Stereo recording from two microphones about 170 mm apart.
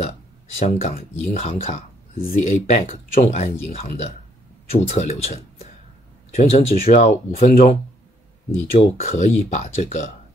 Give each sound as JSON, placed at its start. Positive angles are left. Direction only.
{"t": 0.6, "sound": "speech", "side_deg": 40}
{"t": 8.5, "sound": "speech", "side_deg": 40}